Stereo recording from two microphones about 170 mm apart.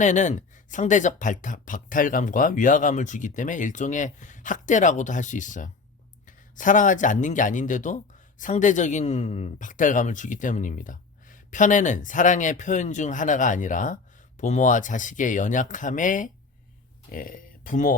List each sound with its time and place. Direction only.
0.0 s speech: 45° left (ahead or behind)